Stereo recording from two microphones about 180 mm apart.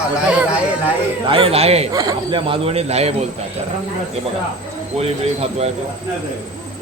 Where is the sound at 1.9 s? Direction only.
20° right (ahead or behind).